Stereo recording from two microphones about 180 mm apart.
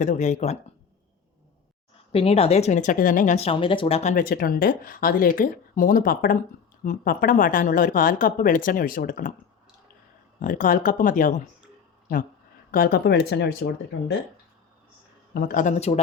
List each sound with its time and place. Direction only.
0.0 s speech: 40° left (ahead or behind)
2.1 s speech: 35° left (ahead or behind)
4.1 s speech: 50° left (ahead or behind)
10.4 s speech: 50° left (ahead or behind)
12.7 s speech: 60° left (ahead or behind)
15.4 s speech: 50° left (ahead or behind)